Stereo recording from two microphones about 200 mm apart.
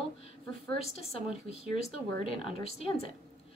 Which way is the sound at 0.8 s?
30° left (ahead or behind).